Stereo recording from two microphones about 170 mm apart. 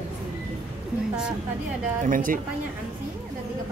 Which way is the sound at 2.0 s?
55° right (ahead or behind).